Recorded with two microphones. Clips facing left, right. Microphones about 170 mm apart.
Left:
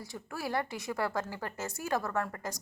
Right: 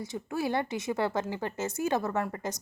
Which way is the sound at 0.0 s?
20° right (ahead or behind).